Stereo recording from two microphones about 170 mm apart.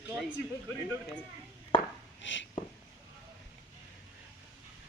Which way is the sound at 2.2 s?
90° left.